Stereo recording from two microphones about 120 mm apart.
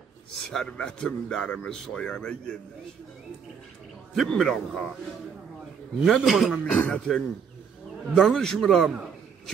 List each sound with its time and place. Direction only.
0.3 s a man's voice: centre (ahead or behind)
4.1 s a man's voice: 5° left (ahead or behind)
5.9 s a man's voice: centre (ahead or behind)